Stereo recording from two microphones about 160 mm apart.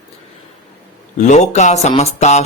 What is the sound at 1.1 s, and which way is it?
A man's voice, 45° left (ahead or behind).